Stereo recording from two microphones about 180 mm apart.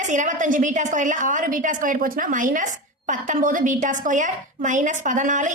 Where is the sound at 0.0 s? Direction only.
45° right (ahead or behind).